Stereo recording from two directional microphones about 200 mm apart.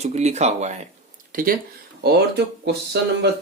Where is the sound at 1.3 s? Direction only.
45° right (ahead or behind).